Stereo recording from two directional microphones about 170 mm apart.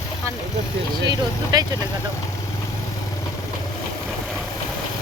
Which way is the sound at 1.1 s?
20° right (ahead or behind).